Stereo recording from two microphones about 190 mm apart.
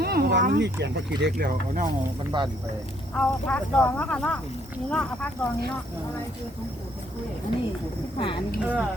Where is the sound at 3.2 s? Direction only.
5° left (ahead or behind).